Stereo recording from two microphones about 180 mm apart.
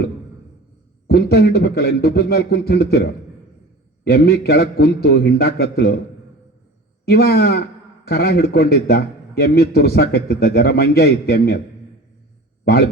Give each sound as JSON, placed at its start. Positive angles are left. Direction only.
{"t": 1.0, "sound": "a man's voice", "side_deg": 60}
{"t": 7.0, "sound": "a man's voice", "side_deg": 60}